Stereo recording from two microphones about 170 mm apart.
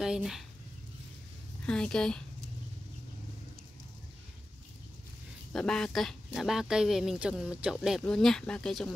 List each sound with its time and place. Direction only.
0.0 s speech: 5° right (ahead or behind)
1.7 s speech: 5° left (ahead or behind)
5.5 s speech: 5° left (ahead or behind)